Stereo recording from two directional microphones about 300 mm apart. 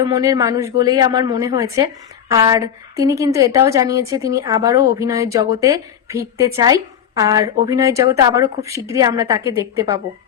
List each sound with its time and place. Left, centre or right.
0.0 s a woman's voice: centre